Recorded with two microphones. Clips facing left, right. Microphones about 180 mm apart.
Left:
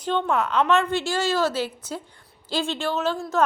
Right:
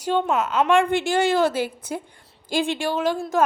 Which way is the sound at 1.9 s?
15° right (ahead or behind).